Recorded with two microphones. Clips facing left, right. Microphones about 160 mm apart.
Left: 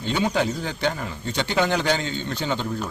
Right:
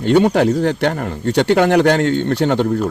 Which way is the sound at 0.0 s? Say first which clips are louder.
Right 10 dB; 65° right (ahead or behind).